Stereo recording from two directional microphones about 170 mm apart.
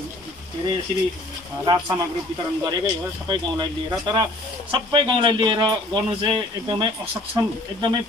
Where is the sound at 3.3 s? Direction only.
25° right (ahead or behind).